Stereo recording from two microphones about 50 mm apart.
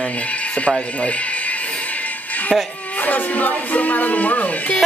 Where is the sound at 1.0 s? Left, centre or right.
Left.